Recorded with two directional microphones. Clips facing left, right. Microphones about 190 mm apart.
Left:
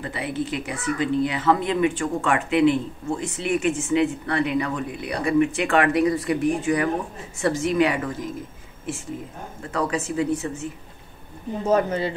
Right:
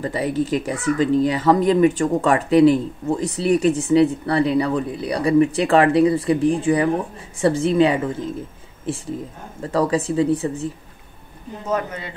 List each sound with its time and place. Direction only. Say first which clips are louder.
0.0 s speech: right 6 dB; 40° right (ahead or behind)
9.6 s speech: right 6 dB; 35° right (ahead or behind)
11.6 s speech: left 4 dB; 30° left (ahead or behind)